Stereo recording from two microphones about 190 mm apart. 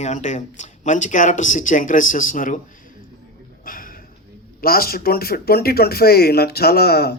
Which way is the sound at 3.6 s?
50° left (ahead or behind).